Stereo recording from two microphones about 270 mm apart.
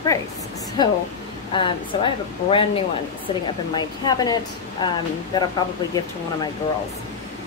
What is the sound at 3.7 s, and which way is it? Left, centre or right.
A woman's voice, centre.